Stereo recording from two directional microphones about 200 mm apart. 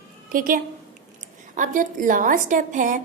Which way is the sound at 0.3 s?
45° right (ahead or behind).